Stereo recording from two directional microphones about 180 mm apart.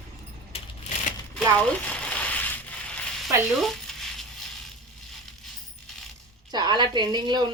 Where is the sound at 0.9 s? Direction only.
40° left (ahead or behind).